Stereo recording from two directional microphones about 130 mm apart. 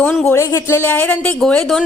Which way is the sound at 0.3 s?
20° left (ahead or behind).